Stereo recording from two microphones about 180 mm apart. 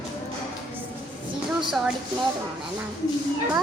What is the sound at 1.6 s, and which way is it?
Speech, 5° right (ahead or behind).